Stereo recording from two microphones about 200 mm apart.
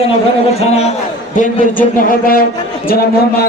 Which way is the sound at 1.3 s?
40° left (ahead or behind).